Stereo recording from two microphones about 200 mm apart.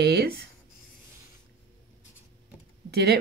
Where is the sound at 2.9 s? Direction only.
55° right (ahead or behind).